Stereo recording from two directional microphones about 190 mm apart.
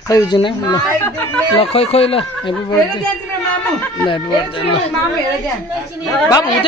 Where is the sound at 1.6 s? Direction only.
30° left (ahead or behind).